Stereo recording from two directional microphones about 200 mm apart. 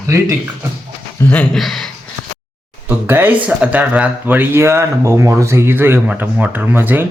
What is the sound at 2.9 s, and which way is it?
Speech, 10° right (ahead or behind).